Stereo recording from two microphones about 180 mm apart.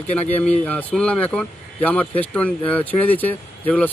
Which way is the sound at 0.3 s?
10° left (ahead or behind).